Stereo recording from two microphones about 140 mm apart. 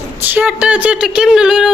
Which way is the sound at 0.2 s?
10° right (ahead or behind).